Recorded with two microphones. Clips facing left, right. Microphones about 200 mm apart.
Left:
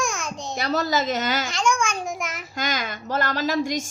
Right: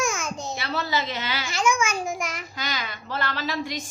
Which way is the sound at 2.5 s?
45° left (ahead or behind).